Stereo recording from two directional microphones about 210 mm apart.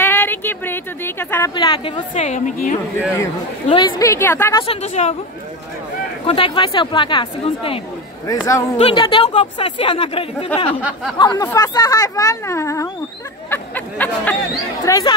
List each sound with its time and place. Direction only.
0.0 s a sound: 10° left (ahead or behind); by 2.7 s 35° left (ahead or behind)
3.6 s speech: 25° left (ahead or behind)
4.6 s a woman's voice: 30° left (ahead or behind)
6.2 s speech: 25° left (ahead or behind)
8.3 s speech: 15° left (ahead or behind)
8.7 s speech: 25° left (ahead or behind)
10.8 s a sound: 5° right (ahead or behind)
11.1 s speech: 20° left (ahead or behind)
13.5 s a sound: 10° left (ahead or behind)
14.9 s speech: 20° left (ahead or behind)